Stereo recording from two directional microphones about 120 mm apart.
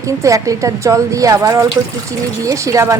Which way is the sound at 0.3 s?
25° right (ahead or behind).